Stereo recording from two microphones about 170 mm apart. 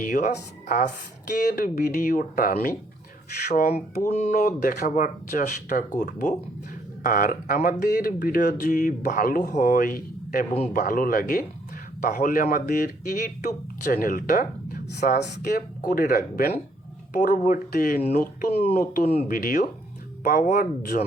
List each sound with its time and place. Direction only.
0.0 s speech: 50° left (ahead or behind)
7.0 s speech: 55° left (ahead or behind)
18.5 s speech: 40° left (ahead or behind)
18.8 s speech: 60° left (ahead or behind)